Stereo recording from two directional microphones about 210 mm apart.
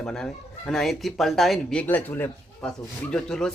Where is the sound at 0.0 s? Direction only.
Centre (ahead or behind).